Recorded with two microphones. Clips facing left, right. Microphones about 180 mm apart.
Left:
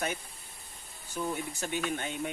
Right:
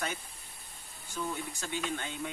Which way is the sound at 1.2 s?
15° left (ahead or behind).